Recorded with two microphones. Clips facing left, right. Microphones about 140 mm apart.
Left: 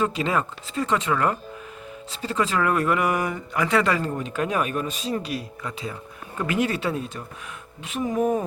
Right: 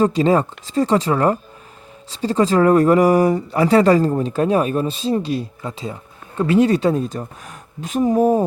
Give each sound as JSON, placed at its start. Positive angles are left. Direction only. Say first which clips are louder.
{"t": 0.0, "sound": "speech", "louder": "right 8 dB", "side_deg": -35}